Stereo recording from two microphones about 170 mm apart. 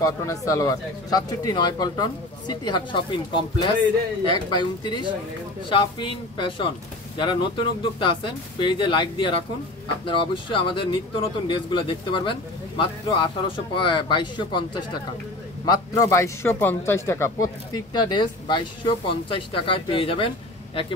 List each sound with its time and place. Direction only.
0.0 s a man's voice: 20° left (ahead or behind)